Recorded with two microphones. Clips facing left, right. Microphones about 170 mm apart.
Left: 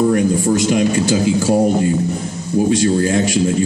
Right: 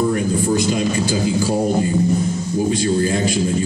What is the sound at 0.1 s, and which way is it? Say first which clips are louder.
Speech: left 3 dB; 65° left (ahead or behind).